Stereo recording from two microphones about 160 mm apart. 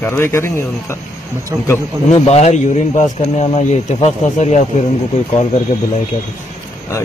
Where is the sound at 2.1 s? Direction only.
40° left (ahead or behind).